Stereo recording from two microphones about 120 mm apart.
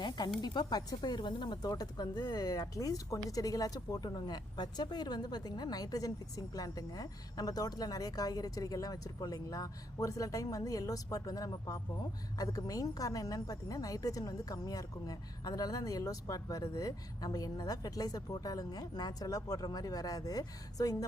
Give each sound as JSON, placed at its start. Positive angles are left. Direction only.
{"t": 0.4, "sound": "a woman's voice", "side_deg": 35}